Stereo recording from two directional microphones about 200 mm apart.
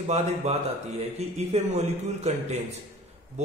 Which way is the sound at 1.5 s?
35° right (ahead or behind).